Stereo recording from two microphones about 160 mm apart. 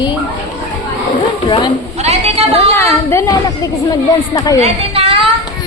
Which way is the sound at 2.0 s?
40° right (ahead or behind).